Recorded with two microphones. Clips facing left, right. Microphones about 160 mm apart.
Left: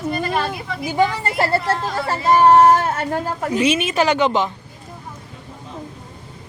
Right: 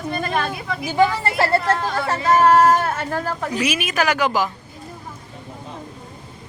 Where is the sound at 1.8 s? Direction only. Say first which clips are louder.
Even; centre (ahead or behind).